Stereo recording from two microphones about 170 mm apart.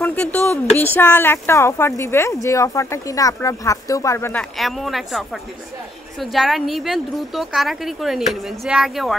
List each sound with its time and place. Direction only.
0.0 s a woman's voice: 10° left (ahead or behind)